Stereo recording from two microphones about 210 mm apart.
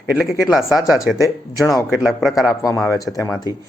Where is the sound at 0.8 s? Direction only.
15° left (ahead or behind).